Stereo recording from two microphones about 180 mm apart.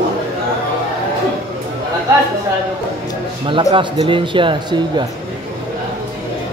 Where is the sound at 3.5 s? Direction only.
25° right (ahead or behind).